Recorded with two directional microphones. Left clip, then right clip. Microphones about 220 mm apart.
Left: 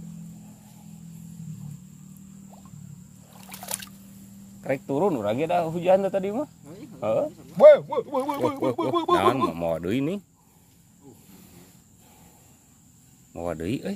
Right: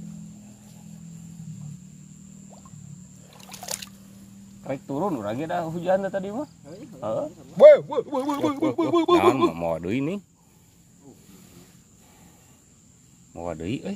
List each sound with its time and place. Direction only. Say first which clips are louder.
3.3 s boat: right 1 dB; centre (ahead or behind)
4.6 s speech: left 4 dB; 30° left (ahead or behind)
7.5 s speech: right 1 dB; 10° right (ahead or behind)
9.1 s speech: right 2 dB; 5° left (ahead or behind)
13.3 s speech: left 1 dB; 15° left (ahead or behind)